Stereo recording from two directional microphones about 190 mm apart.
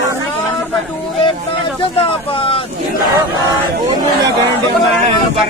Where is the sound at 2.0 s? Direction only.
30° left (ahead or behind).